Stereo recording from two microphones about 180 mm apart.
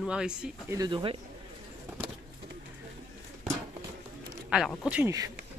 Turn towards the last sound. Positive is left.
turn(degrees=-5)  # may be behind; listen again after turning